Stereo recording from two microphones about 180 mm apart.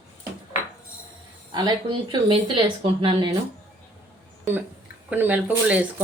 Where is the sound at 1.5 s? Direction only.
25° right (ahead or behind).